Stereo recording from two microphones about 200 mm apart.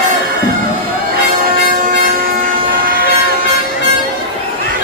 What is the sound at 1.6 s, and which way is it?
Train, 45° right (ahead or behind).